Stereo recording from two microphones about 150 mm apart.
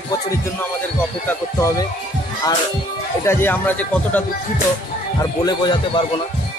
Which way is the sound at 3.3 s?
15° left (ahead or behind).